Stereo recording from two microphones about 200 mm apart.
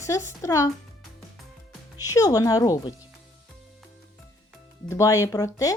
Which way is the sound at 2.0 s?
15° left (ahead or behind).